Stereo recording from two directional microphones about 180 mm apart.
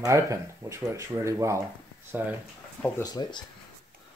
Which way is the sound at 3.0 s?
25° left (ahead or behind).